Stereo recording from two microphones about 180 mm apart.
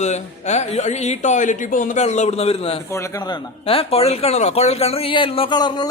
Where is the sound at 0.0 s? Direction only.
40° left (ahead or behind).